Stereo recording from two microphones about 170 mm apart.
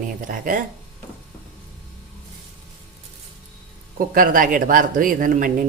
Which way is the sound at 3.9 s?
55° right (ahead or behind).